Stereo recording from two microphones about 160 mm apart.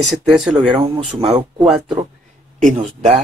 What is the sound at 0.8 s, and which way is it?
Speech, 35° right (ahead or behind).